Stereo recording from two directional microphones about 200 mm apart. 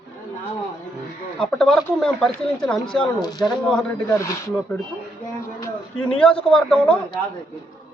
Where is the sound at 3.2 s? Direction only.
20° left (ahead or behind).